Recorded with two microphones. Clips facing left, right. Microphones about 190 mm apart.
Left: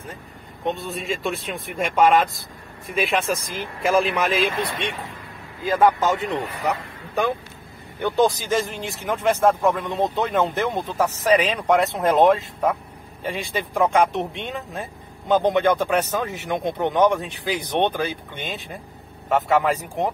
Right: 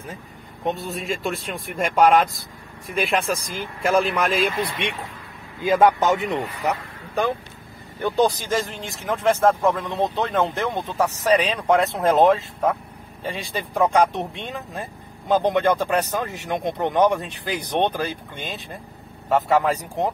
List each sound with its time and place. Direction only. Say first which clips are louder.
0.7 s speech: even; centre (ahead or behind)
5.6 s a man's voice: right 1 dB; 20° right (ahead or behind)
6.6 s vehicle: even; centre (ahead or behind)
8.5 s speech: left 2 dB; centre (ahead or behind)